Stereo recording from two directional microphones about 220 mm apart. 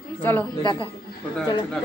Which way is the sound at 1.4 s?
20° left (ahead or behind).